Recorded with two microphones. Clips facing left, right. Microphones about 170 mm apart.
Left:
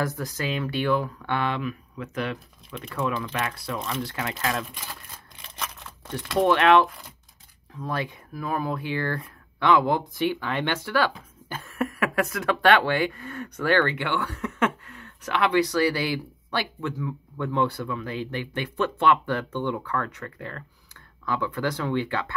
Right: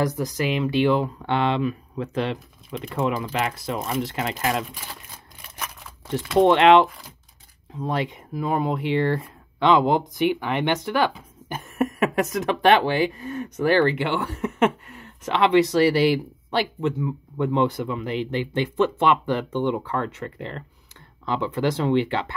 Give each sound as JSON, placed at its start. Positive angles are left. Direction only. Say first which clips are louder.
{"t": 0.0, "sound": "speech", "louder": "right 5 dB", "side_deg": -15}
{"t": 5.4, "sound": "scissors", "louder": "even", "side_deg": -10}
{"t": 6.4, "sound": "speech", "louder": "right 3 dB", "side_deg": -25}